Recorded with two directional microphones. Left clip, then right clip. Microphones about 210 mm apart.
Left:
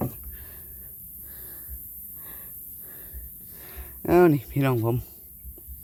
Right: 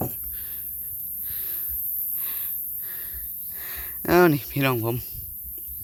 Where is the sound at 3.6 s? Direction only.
10° left (ahead or behind).